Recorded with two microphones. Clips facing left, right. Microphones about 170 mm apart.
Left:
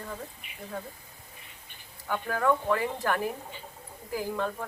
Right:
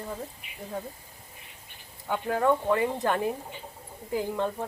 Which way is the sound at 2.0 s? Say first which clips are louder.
Right 2 dB; 20° right (ahead or behind).